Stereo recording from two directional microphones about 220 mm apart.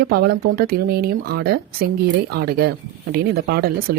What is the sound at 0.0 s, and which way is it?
Speech, 45° right (ahead or behind).